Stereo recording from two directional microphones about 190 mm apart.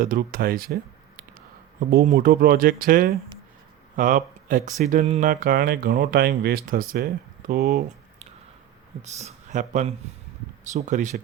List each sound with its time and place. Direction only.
0.0 s speech: 50° right (ahead or behind)
9.0 s speech: 35° right (ahead or behind)